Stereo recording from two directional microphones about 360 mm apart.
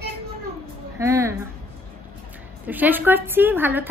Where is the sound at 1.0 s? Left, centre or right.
Centre.